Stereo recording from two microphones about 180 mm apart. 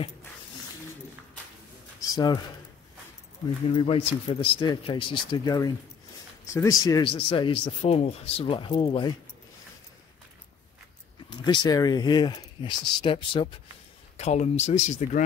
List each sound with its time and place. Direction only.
2.1 s speech: 20° left (ahead or behind)
3.7 s speech: 30° left (ahead or behind)
11.2 s speech: 25° left (ahead or behind)
14.1 s speech: 40° left (ahead or behind)